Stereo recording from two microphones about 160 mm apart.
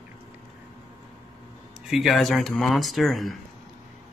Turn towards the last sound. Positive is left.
turn(degrees=0)  # may be behind; listen again after turning